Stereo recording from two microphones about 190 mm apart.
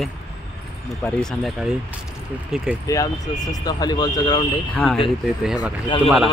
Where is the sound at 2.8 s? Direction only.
20° left (ahead or behind).